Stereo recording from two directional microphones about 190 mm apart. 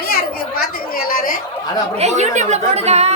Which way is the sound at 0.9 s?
50° left (ahead or behind).